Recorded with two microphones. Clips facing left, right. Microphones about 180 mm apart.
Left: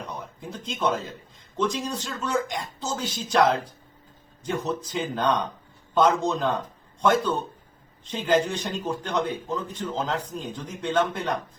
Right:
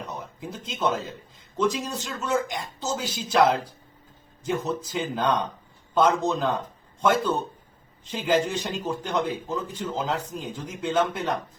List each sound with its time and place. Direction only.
0.3 s a man's voice: 5° right (ahead or behind)